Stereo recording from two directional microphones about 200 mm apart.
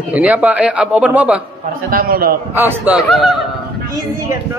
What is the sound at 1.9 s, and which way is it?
Speech, 45° right (ahead or behind).